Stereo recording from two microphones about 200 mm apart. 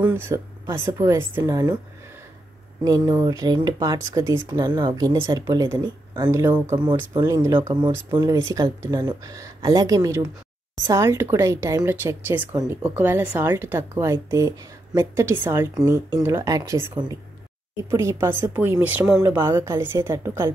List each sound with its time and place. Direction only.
0.0 s speech: 10° right (ahead or behind)
2.8 s speech: 20° right (ahead or behind)